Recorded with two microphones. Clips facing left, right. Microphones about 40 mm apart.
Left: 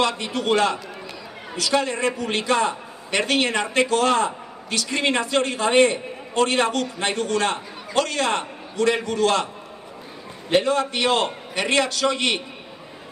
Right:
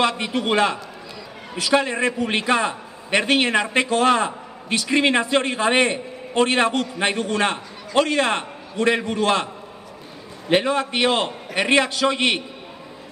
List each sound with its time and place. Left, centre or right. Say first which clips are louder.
0.0 s a man's voice: right 2 dB; right
10.5 s a man's voice: even; right